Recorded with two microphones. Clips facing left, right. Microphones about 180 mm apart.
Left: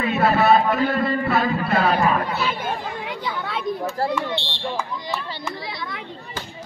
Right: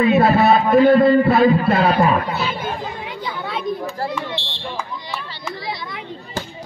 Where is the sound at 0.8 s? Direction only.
40° right (ahead or behind).